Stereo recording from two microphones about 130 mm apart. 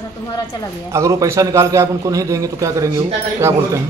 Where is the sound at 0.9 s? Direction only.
25° right (ahead or behind).